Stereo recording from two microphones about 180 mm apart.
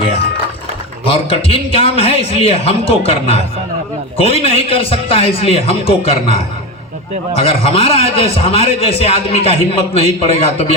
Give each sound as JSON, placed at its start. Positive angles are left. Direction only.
{"t": 1.0, "sound": "a man's voice", "side_deg": 30}
{"t": 7.3, "sound": "a man's voice", "side_deg": 30}